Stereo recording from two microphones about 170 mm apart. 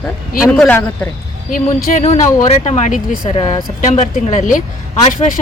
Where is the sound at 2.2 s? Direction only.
45° left (ahead or behind).